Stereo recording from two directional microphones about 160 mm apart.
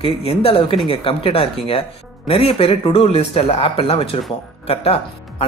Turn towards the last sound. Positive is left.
turn(degrees=35)  # may be behind; listen again after turning